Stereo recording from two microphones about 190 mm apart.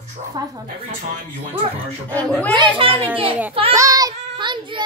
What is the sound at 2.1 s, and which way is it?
Speech, 5° left (ahead or behind).